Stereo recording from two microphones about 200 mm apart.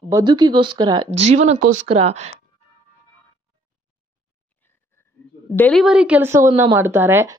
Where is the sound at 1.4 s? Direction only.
40° right (ahead or behind).